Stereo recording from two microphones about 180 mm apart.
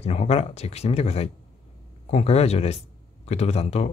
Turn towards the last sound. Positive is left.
turn(degrees=35)  # may be behind; listen again after turning